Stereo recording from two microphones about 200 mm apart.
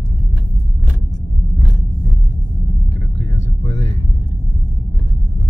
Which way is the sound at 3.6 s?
30° left (ahead or behind).